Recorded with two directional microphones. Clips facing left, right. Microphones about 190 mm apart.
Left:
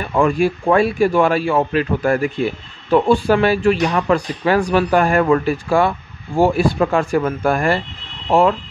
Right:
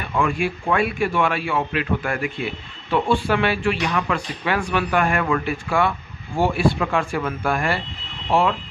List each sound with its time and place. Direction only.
0.0 s a man's voice: 40° left (ahead or behind)